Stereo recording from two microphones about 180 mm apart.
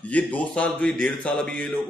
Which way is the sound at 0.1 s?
10° left (ahead or behind).